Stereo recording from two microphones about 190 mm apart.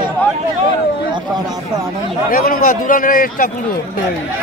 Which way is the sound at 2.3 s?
45° left (ahead or behind).